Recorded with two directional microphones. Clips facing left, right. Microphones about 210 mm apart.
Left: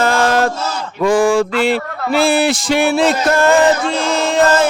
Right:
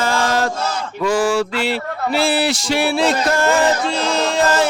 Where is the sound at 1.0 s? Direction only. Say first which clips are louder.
Left 5 dB; 50° left (ahead or behind).